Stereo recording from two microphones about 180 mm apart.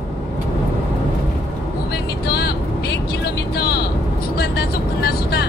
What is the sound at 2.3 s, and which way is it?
Vehicle, 60° left (ahead or behind).